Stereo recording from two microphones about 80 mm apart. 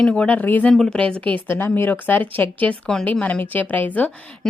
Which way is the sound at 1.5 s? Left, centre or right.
Left.